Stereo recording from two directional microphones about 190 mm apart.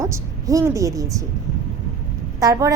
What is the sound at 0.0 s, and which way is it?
A woman's voice, 15° right (ahead or behind).